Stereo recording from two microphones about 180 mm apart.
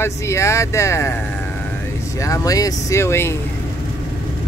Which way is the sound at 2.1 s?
15° left (ahead or behind).